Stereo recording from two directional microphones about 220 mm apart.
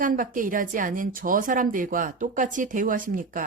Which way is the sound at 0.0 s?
40° right (ahead or behind).